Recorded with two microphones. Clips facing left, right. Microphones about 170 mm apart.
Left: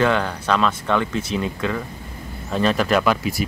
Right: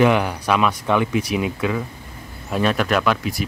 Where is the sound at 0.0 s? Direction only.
15° right (ahead or behind).